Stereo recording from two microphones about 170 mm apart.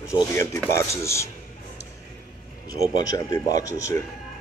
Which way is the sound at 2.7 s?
20° left (ahead or behind).